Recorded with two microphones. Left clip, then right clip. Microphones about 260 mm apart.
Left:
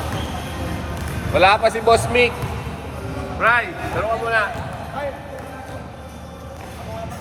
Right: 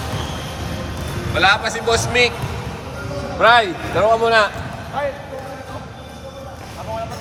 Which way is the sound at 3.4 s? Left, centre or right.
Centre.